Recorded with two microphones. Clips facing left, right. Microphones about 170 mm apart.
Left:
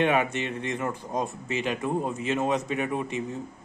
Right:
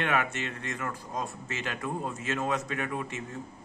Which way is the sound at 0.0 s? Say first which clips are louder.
Left 6 dB; 20° left (ahead or behind).